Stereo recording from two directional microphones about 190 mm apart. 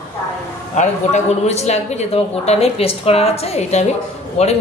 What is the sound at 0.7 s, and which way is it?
A woman's voice, 35° left (ahead or behind).